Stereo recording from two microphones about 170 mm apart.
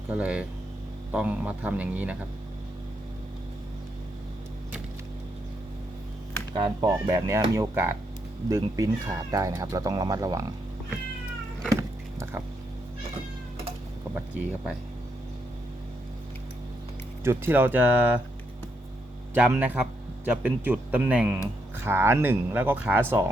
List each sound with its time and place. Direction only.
0.1 s speech: 5° right (ahead or behind)
6.5 s speech: 25° right (ahead or behind)
11.8 s a sound: 15° right (ahead or behind)
17.2 s speech: 15° right (ahead or behind)
19.3 s speech: 10° right (ahead or behind)